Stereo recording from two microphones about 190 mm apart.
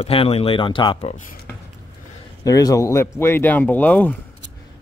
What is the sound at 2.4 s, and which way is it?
Speech, 20° left (ahead or behind).